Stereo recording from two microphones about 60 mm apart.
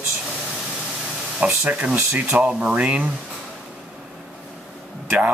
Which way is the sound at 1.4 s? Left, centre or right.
Right.